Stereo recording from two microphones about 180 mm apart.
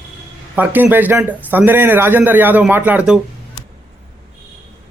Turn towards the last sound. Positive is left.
turn(degrees=-5)  # may be behind; listen again after turning